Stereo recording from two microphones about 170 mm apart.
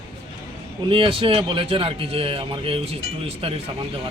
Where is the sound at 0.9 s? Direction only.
30° right (ahead or behind).